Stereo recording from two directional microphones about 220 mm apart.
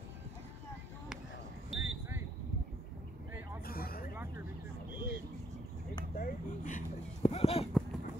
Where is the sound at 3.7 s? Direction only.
40° left (ahead or behind).